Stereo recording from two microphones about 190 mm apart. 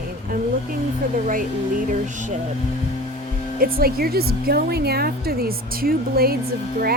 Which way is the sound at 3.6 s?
50° right (ahead or behind).